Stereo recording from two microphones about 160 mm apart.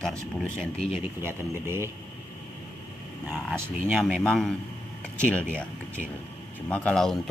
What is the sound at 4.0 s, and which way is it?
A man's voice, 5° left (ahead or behind).